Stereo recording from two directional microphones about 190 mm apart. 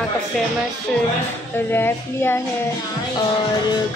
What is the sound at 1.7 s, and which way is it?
Speech, 10° left (ahead or behind).